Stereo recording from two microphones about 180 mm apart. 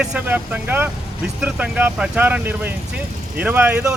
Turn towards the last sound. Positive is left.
turn(degrees=-10)  # may be behind; listen again after turning